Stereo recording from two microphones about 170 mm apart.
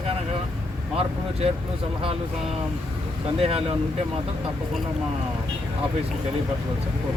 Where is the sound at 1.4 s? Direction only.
40° right (ahead or behind).